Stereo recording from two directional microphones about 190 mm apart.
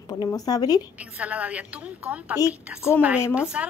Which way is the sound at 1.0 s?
5° right (ahead or behind).